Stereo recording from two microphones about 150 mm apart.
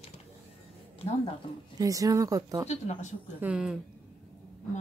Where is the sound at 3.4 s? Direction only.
5° right (ahead or behind).